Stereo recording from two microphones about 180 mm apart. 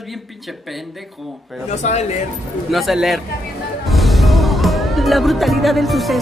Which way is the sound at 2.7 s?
Centre (ahead or behind).